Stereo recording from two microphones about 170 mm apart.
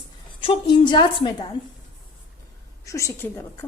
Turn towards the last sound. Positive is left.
turn(degrees=15)  # may be behind; listen again after turning